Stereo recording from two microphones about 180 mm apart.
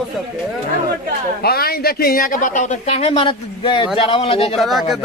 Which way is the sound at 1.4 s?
60° left (ahead or behind).